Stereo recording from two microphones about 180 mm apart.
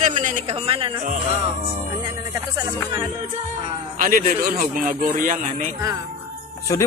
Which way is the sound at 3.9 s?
50° right (ahead or behind).